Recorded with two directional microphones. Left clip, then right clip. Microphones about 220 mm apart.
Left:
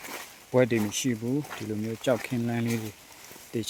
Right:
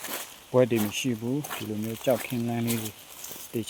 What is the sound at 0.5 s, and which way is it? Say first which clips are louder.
Speech: right 1 dB; 10° left (ahead or behind).